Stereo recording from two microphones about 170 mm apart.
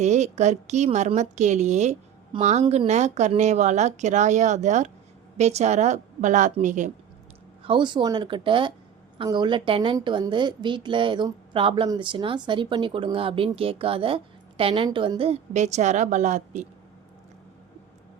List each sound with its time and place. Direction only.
0.0 s speech: 40° right (ahead or behind)
7.6 s a woman's voice: 30° right (ahead or behind); by 16.6 s 45° right (ahead or behind)